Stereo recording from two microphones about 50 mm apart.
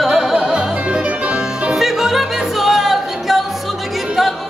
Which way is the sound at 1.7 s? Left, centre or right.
Centre.